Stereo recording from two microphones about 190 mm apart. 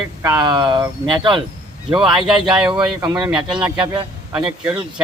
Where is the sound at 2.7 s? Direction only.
25° right (ahead or behind).